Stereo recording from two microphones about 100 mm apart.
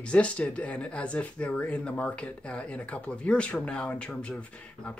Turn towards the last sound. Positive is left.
turn(degrees=10)  # may be behind; listen again after turning